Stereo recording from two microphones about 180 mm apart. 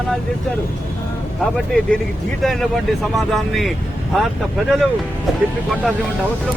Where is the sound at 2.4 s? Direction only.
Centre (ahead or behind).